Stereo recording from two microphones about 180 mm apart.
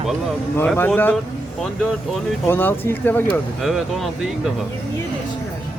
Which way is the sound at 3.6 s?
Centre (ahead or behind).